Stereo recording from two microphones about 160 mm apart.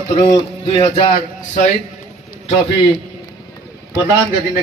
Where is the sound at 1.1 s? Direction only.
50° left (ahead or behind).